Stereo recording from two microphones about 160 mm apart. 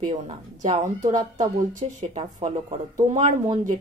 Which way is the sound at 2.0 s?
35° right (ahead or behind).